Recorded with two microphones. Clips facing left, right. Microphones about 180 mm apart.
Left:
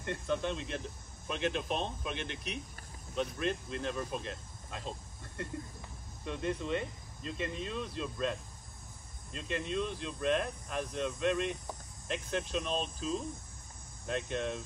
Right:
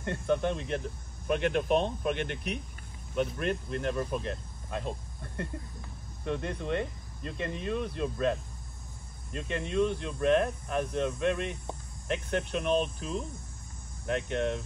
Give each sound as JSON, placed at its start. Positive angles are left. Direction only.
{"t": 0.0, "sound": "speech", "side_deg": -55}